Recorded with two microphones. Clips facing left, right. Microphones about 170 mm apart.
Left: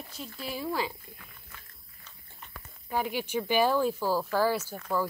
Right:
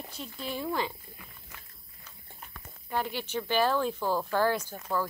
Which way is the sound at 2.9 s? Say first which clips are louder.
Left 2 dB; 10° left (ahead or behind).